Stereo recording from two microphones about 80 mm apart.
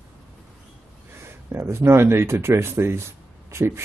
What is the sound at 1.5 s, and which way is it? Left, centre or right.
Speech, right.